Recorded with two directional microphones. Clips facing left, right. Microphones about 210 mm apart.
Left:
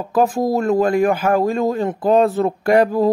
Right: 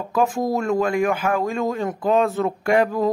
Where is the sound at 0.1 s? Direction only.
35° left (ahead or behind).